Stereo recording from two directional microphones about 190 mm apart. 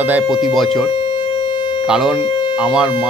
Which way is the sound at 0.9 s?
25° left (ahead or behind).